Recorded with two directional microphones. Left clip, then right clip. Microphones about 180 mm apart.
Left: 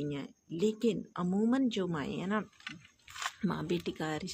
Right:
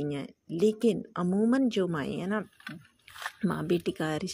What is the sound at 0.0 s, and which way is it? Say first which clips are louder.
Speech: right 4 dB; 35° right (ahead or behind).